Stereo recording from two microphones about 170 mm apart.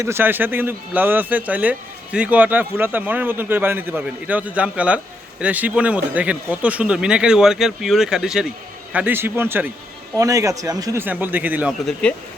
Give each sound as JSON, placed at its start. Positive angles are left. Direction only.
{"t": 0.0, "sound": "a man's voice", "side_deg": -15}